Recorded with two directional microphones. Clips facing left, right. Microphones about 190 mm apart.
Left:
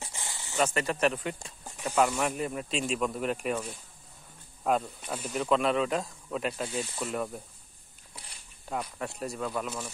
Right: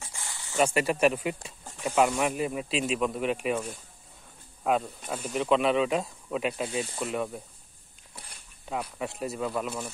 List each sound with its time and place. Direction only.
0.0 s a sound: 20° left (ahead or behind)
0.6 s speech: 10° right (ahead or behind)
8.6 s speech: 5° right (ahead or behind)
9.7 s speech: 15° right (ahead or behind)